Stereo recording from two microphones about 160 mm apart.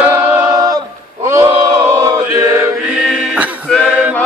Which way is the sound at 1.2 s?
20° right (ahead or behind).